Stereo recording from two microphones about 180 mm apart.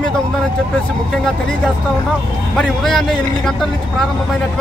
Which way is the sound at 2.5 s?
Centre (ahead or behind).